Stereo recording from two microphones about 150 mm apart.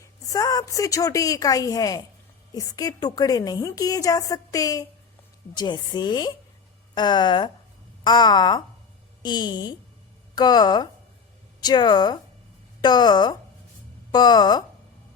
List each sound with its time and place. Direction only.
0.0 s a woman's voice: 20° left (ahead or behind)